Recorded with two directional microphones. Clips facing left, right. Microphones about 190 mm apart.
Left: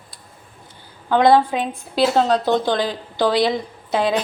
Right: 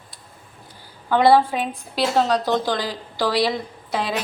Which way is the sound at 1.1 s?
20° left (ahead or behind).